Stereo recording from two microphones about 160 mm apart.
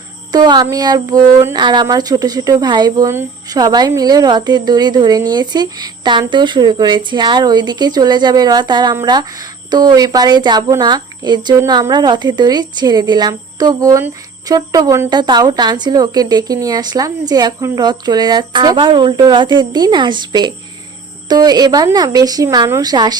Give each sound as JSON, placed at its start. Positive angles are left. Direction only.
{"t": 0.3, "sound": "speech", "side_deg": -25}